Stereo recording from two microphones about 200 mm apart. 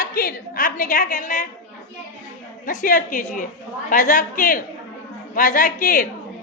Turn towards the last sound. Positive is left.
turn(degrees=45)  # may be behind; listen again after turning